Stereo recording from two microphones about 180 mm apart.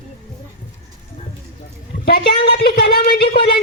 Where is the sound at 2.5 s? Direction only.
60° left (ahead or behind).